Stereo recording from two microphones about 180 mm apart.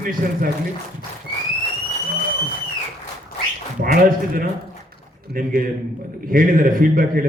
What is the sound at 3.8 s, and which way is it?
A man's voice, 50° right (ahead or behind).